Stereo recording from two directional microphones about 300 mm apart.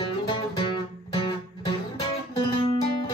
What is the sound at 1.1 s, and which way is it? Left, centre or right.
Music, centre.